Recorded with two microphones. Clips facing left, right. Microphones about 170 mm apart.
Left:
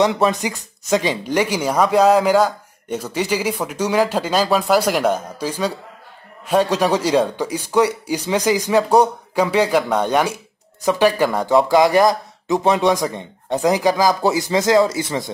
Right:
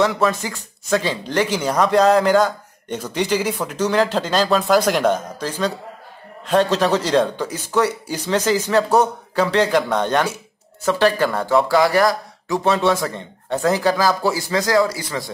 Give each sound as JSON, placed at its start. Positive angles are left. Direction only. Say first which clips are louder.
{"t": 0.0, "sound": "speech", "louder": "left 2 dB", "side_deg": 20}